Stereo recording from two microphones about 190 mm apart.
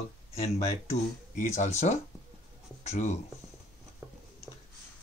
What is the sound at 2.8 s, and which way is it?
Speech, 35° left (ahead or behind).